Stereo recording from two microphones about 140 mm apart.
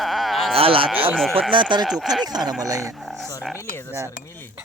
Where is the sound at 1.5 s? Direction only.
35° right (ahead or behind).